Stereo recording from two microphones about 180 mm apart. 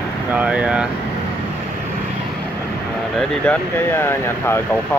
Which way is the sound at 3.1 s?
5° left (ahead or behind).